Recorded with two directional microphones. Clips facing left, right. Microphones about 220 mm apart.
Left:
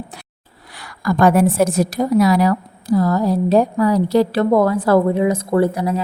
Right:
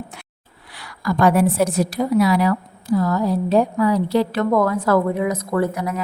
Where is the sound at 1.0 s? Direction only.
45° left (ahead or behind).